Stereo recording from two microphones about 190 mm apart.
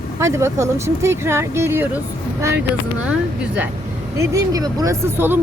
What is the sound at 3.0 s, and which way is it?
Speech, 5° right (ahead or behind).